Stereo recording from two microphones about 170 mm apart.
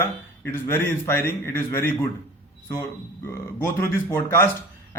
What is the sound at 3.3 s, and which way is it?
A man's voice, 15° left (ahead or behind).